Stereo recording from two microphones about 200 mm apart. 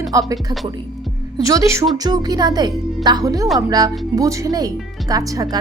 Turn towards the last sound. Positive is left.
turn(degrees=-15)  # may be behind; listen again after turning